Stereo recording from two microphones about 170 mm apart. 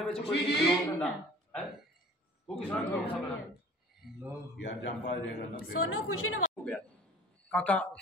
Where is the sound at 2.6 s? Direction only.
5° left (ahead or behind).